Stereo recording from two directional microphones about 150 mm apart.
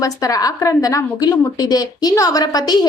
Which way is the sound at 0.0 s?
25° left (ahead or behind).